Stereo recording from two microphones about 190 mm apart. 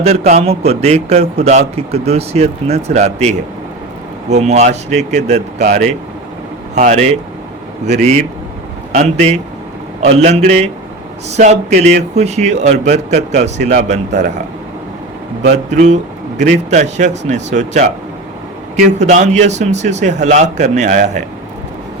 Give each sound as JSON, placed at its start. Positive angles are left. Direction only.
{"t": 0.3, "sound": "speech", "side_deg": -35}
{"t": 5.6, "sound": "speech", "side_deg": -50}
{"t": 6.7, "sound": "speech", "side_deg": -40}
{"t": 10.0, "sound": "speech", "side_deg": -35}
{"t": 15.5, "sound": "speech", "side_deg": -40}
{"t": 18.9, "sound": "speech", "side_deg": -40}